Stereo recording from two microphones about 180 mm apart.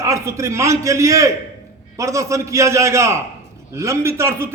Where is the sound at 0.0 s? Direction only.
15° right (ahead or behind).